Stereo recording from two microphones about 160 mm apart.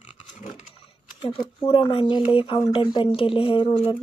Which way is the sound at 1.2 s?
30° left (ahead or behind).